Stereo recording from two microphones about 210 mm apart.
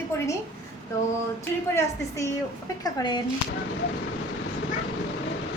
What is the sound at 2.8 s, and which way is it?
Speech, 20° left (ahead or behind).